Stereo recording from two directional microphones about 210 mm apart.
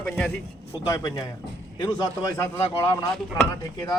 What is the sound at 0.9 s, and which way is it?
A man's voice, 20° left (ahead or behind).